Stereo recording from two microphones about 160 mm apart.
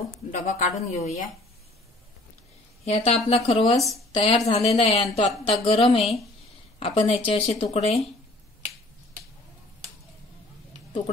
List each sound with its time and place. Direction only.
0.3 s speech: 50° left (ahead or behind)
2.8 s a woman's voice: 40° left (ahead or behind)